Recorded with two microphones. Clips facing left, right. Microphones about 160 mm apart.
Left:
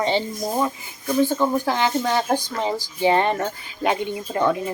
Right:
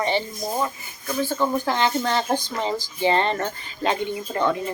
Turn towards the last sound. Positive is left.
turn(degrees=10)  # may be behind; listen again after turning